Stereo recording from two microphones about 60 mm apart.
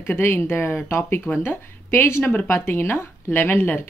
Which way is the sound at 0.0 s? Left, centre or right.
Left.